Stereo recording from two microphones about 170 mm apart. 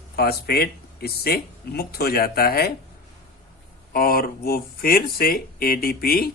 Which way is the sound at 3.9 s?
60° left (ahead or behind).